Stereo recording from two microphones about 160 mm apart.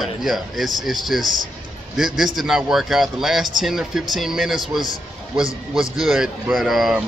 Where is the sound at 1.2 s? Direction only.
25° left (ahead or behind).